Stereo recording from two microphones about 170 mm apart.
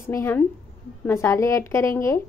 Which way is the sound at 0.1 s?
15° left (ahead or behind).